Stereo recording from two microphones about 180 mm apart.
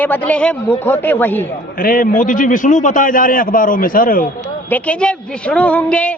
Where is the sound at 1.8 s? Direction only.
50° left (ahead or behind).